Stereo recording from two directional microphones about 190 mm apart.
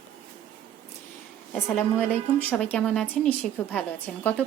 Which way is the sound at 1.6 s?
10° left (ahead or behind).